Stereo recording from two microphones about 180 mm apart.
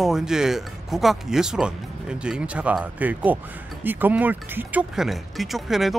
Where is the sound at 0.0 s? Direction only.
5° right (ahead or behind).